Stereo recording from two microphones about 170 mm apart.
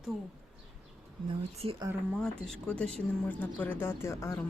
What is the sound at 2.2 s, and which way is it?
Speech, 5° left (ahead or behind).